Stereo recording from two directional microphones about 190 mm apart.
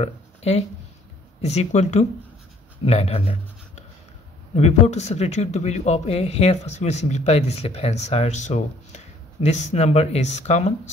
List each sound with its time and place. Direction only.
0.0 s speech: 35° left (ahead or behind)